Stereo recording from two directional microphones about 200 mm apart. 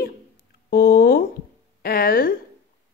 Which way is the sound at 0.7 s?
50° left (ahead or behind).